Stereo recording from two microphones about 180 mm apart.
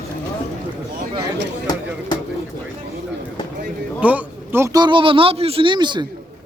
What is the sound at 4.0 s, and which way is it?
A man's voice, 10° right (ahead or behind).